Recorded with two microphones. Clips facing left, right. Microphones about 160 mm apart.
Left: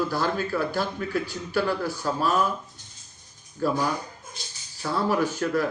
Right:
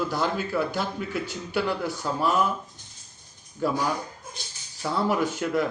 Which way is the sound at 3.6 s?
15° right (ahead or behind).